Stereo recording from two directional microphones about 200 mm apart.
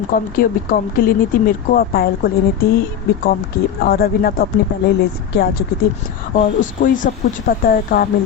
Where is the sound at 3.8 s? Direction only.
50° left (ahead or behind).